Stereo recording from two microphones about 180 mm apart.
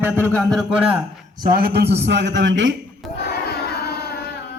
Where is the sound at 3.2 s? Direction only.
65° left (ahead or behind).